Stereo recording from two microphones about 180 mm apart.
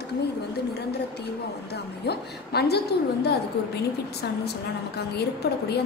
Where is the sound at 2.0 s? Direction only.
65° left (ahead or behind).